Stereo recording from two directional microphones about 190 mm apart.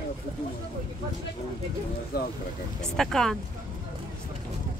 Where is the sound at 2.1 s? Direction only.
55° left (ahead or behind).